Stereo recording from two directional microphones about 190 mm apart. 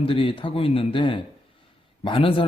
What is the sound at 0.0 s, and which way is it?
Speech, 30° left (ahead or behind).